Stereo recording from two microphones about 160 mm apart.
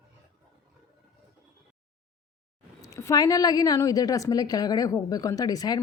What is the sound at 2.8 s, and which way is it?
A woman's voice, 20° left (ahead or behind).